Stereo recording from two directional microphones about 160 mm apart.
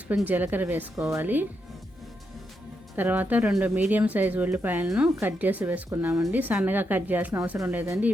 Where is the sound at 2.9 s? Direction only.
10° right (ahead or behind).